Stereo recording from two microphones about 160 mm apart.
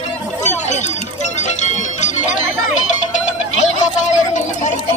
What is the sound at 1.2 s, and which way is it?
Music, 45° left (ahead or behind).